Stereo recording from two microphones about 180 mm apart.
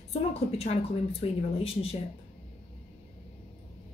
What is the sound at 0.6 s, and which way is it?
Speech, 35° left (ahead or behind).